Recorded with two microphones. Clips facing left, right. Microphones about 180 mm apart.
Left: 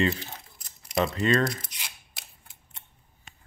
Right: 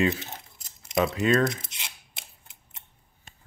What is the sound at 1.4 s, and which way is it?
Scissors, 25° right (ahead or behind).